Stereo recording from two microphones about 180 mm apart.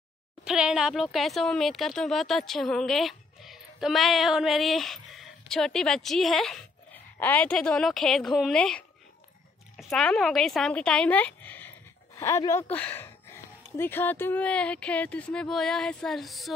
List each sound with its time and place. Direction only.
0.5 s speech: 5° right (ahead or behind)